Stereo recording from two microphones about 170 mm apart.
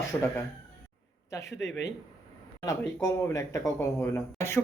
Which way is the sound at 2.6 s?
15° left (ahead or behind).